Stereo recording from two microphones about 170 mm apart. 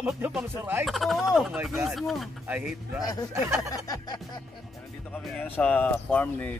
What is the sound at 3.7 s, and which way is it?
Speech, 20° left (ahead or behind).